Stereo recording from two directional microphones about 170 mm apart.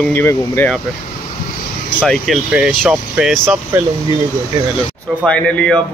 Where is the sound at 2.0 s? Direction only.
5° right (ahead or behind).